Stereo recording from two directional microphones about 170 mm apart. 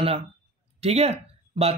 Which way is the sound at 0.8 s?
35° right (ahead or behind).